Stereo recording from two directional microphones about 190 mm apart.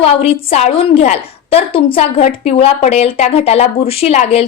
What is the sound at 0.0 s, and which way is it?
A woman's voice, 30° left (ahead or behind).